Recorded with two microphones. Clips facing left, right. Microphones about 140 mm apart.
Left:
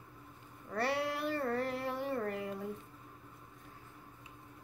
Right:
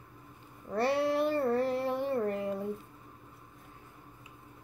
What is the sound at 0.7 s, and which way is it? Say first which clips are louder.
A woman's voice: right 6 dB; 30° right (ahead or behind).